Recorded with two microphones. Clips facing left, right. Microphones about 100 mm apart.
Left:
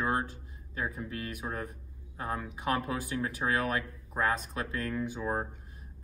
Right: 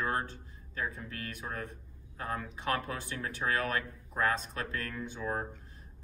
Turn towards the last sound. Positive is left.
turn(degrees=25)  # may be behind; listen again after turning